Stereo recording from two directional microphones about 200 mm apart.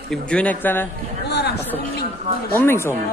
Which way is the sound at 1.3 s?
55° left (ahead or behind).